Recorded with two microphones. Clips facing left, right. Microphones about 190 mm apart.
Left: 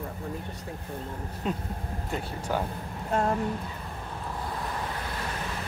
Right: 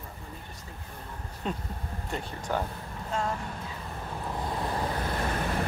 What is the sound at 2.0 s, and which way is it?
Speech, 5° left (ahead or behind).